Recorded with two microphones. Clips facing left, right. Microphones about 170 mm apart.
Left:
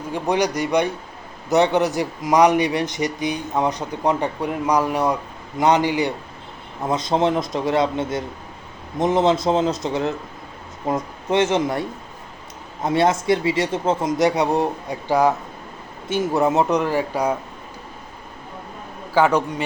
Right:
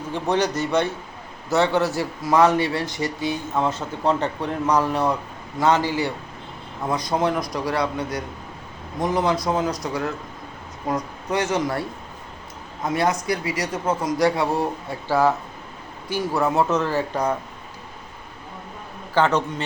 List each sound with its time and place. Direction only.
0.1 s a man's voice: 15° left (ahead or behind)
19.1 s speech: 10° left (ahead or behind)